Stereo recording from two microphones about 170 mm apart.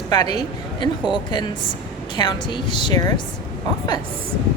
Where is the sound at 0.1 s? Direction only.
25° left (ahead or behind).